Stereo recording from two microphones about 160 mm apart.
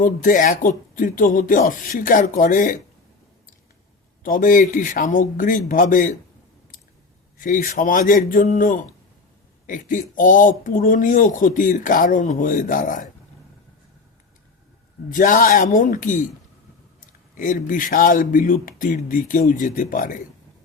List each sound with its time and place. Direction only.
0.0 s speech: 55° left (ahead or behind)
4.2 s speech: 55° left (ahead or behind)
7.3 s speech: 55° left (ahead or behind)
15.1 s speech: 55° left (ahead or behind)
17.3 s speech: 55° left (ahead or behind)